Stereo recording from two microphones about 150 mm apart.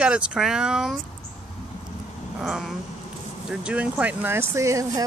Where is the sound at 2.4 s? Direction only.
Centre (ahead or behind); by 5.0 s 20° right (ahead or behind).